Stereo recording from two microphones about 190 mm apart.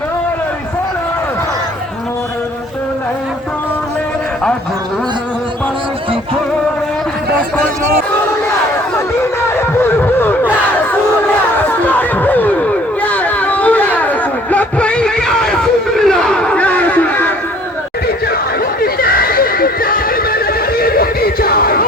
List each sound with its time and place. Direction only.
9.6 s a sound: 10° left (ahead or behind)
11.5 s chatter: 10° left (ahead or behind)
18.8 s neigh: 50° left (ahead or behind)